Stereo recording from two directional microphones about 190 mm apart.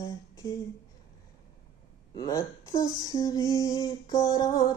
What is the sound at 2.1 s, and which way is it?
Speech, 20° left (ahead or behind).